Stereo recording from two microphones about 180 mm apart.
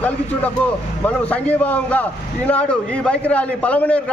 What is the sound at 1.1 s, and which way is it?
A man's voice, 10° left (ahead or behind).